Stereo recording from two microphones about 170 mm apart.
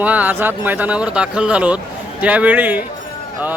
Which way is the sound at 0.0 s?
10° right (ahead or behind).